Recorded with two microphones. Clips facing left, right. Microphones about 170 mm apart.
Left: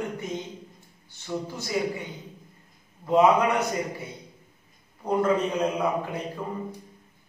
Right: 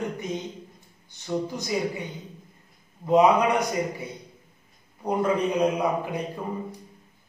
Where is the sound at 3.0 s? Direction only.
15° right (ahead or behind).